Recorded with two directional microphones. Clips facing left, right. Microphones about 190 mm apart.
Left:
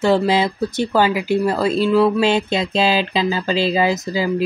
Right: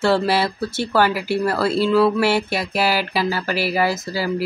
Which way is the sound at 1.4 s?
15° left (ahead or behind).